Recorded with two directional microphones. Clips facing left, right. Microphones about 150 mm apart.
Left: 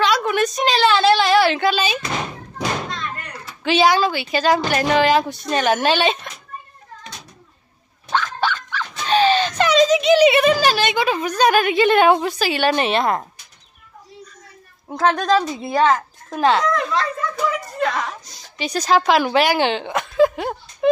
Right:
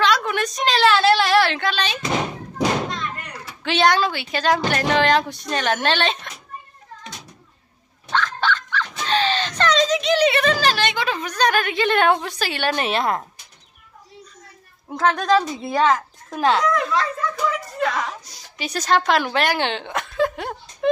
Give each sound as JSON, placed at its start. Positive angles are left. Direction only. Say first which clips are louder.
{"t": 0.0, "sound": "a sound", "louder": "left 2 dB", "side_deg": 5}
{"t": 2.9, "sound": "a sound", "louder": "even", "side_deg": -15}
{"t": 3.6, "sound": "speech", "louder": "left 2 dB", "side_deg": 5}
{"t": 8.1, "sound": "dog", "louder": "left 1 dB", "side_deg": 10}
{"t": 9.0, "sound": "a child's voice", "louder": "left 6 dB", "side_deg": 10}
{"t": 14.9, "sound": "speech", "louder": "left 2 dB", "side_deg": 35}
{"t": 15.3, "sound": "a woman's voice", "louder": "left 1 dB", "side_deg": 0}